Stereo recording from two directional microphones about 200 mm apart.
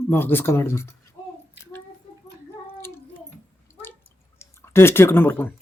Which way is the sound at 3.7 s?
10° left (ahead or behind).